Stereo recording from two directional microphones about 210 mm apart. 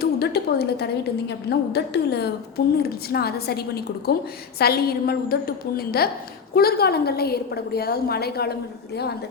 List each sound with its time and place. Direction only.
0.0 s a woman's voice: 50° left (ahead or behind)